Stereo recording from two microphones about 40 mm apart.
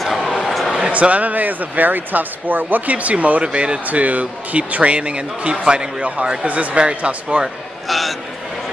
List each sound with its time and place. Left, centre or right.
0.0 s a sound: centre
0.9 s speech: right
3.8 s speech: right
6.4 s speech: right
7.9 s speech: centre